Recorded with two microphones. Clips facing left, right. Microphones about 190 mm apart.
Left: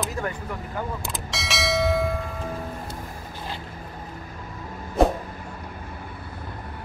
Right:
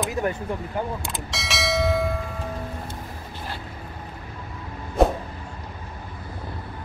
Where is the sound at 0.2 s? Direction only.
20° right (ahead or behind).